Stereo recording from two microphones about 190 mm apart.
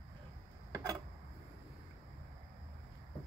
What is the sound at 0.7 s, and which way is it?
Tick-tock, 20° right (ahead or behind).